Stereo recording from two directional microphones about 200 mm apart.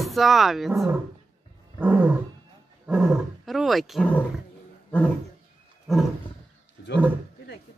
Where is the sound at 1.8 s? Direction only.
10° right (ahead or behind).